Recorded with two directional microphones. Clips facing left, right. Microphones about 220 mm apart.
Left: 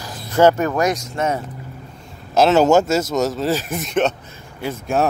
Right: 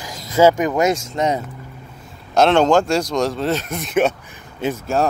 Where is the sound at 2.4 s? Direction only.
5° left (ahead or behind).